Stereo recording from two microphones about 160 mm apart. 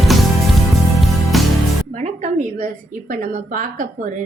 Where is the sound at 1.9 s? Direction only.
50° right (ahead or behind).